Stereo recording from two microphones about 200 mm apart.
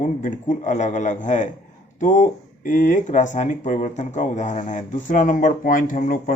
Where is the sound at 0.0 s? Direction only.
40° left (ahead or behind).